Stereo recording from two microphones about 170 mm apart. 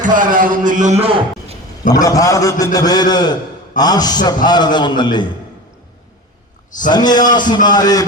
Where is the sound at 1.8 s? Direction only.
20° left (ahead or behind).